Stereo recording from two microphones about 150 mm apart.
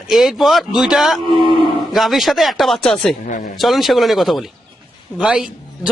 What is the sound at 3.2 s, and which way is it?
Speech, 60° left (ahead or behind).